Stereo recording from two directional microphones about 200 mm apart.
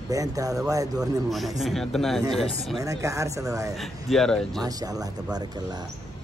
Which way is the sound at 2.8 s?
15° right (ahead or behind).